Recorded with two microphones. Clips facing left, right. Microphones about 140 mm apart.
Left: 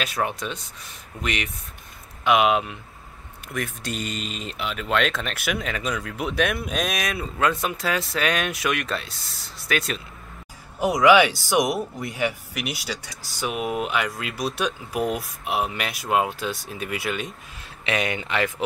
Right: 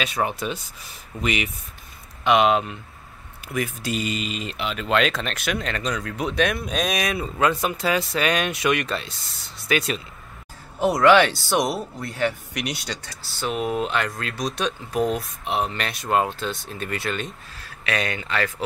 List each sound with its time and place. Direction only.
0.0 s speech: centre (ahead or behind)
10.8 s speech: 10° left (ahead or behind)
17.6 s speech: 20° left (ahead or behind)